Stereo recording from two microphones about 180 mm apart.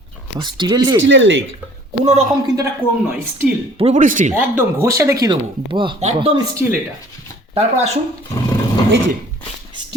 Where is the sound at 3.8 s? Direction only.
45° right (ahead or behind).